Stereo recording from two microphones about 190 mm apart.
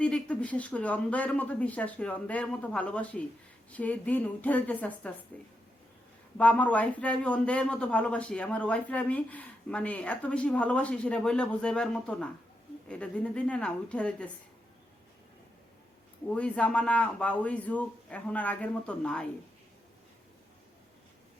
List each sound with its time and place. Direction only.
0.0 s a man's voice: 5° left (ahead or behind)
6.3 s a man's voice: 5° left (ahead or behind)
16.3 s a man's voice: 5° left (ahead or behind)